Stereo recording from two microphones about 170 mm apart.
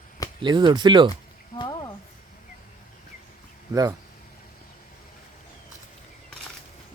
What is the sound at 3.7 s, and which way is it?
Speech, 20° right (ahead or behind).